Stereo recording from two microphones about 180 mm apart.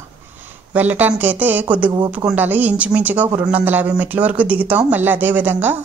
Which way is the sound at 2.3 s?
10° right (ahead or behind).